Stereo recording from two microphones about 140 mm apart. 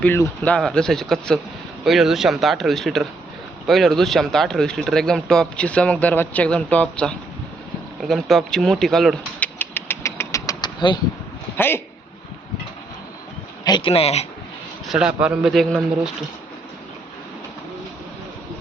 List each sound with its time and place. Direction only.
0.0 s speech: 15° left (ahead or behind)
9.6 s engine: 15° left (ahead or behind); by 11.0 s 30° left (ahead or behind)
11.5 s a man's voice: 15° left (ahead or behind)
13.7 s speech: 35° left (ahead or behind)
14.8 s speech: 5° right (ahead or behind)